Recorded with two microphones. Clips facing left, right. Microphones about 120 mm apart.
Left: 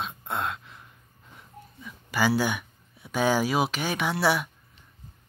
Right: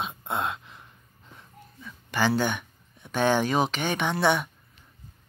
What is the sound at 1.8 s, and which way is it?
Speech, 5° left (ahead or behind).